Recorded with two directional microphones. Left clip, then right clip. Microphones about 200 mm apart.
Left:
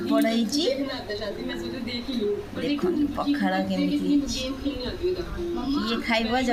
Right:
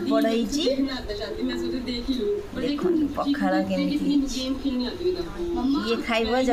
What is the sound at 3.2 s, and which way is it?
Speech, 20° right (ahead or behind).